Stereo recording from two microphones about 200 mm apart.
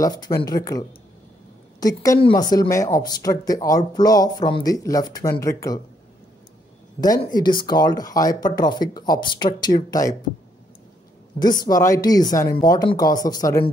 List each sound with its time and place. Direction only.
0.0 s speech: 15° left (ahead or behind)
7.0 s speech: 20° left (ahead or behind)
11.6 s speech: 15° left (ahead or behind)